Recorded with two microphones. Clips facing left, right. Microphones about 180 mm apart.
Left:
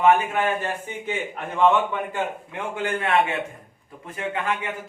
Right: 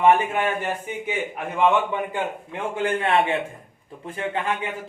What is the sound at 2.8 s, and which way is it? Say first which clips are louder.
A man's voice: right 1 dB; 30° right (ahead or behind).